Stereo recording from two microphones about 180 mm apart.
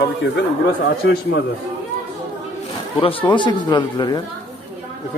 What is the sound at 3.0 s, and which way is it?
A man's voice, 30° left (ahead or behind).